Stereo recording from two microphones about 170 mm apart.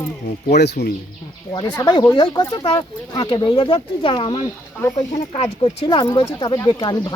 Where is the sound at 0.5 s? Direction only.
80° left.